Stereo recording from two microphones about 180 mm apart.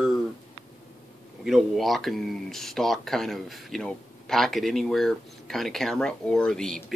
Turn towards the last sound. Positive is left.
turn(degrees=5)  # may be behind; listen again after turning